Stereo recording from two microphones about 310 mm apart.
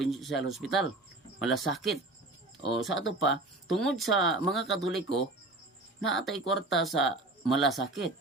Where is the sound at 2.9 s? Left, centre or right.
Left.